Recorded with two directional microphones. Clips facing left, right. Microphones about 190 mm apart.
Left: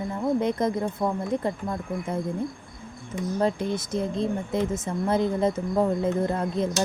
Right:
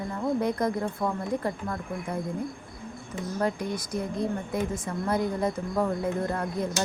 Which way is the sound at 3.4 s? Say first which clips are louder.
Left 3 dB; 25° left (ahead or behind).